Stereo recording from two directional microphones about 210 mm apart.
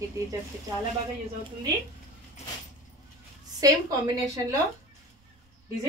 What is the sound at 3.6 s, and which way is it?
A woman's voice, 15° right (ahead or behind).